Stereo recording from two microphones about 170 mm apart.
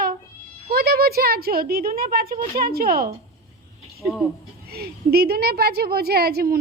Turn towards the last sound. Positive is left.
turn(degrees=-65)  # may be behind; listen again after turning